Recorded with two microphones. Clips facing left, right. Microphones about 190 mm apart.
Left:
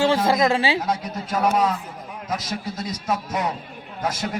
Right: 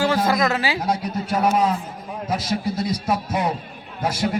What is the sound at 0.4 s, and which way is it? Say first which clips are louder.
Speech: left 2 dB; 25° left (ahead or behind).